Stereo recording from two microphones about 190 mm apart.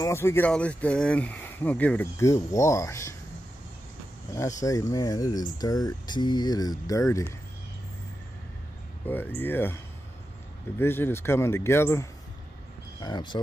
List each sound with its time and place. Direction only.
0.0 s speech: 15° left (ahead or behind)
4.3 s speech: 15° left (ahead or behind)
9.0 s speech: 10° left (ahead or behind)
10.8 s speech: 10° left (ahead or behind)